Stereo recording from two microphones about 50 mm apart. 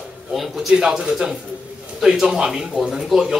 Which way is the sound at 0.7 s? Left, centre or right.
Centre.